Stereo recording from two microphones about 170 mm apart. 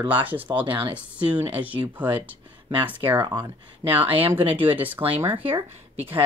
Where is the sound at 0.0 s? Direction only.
10° right (ahead or behind).